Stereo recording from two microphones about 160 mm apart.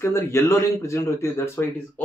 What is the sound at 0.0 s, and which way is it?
Speech, 15° left (ahead or behind).